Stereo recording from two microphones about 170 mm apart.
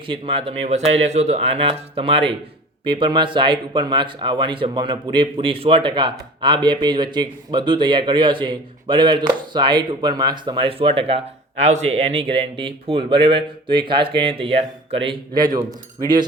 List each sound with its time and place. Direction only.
0.1 s speech: 30° right (ahead or behind)
15.4 s speech: 20° right (ahead or behind)